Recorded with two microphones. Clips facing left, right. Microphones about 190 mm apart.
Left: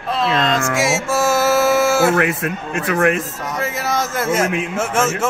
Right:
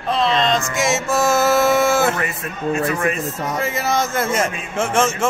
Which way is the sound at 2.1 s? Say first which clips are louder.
Left 7 dB; 80° left.